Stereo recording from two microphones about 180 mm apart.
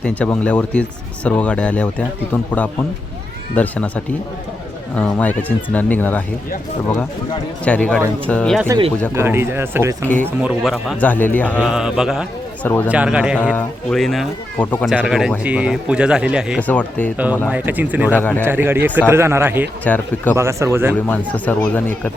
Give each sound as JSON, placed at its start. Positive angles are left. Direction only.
{"t": 0.0, "sound": "speech", "side_deg": 5}
{"t": 7.6, "sound": "speech", "side_deg": 5}
{"t": 9.1, "sound": "speech", "side_deg": -15}
{"t": 11.6, "sound": "speech", "side_deg": -5}
{"t": 13.4, "sound": "speech", "side_deg": 10}
{"t": 16.6, "sound": "speech", "side_deg": 10}
{"t": 17.5, "sound": "speech", "side_deg": -10}
{"t": 18.1, "sound": "speech", "side_deg": 10}
{"t": 18.4, "sound": "speech", "side_deg": -10}
{"t": 19.8, "sound": "speech", "side_deg": 10}
{"t": 20.3, "sound": "speech", "side_deg": -15}
{"t": 20.9, "sound": "speech", "side_deg": 10}